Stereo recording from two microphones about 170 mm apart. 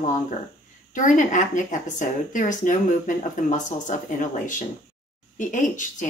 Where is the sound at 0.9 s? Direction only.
50° left (ahead or behind).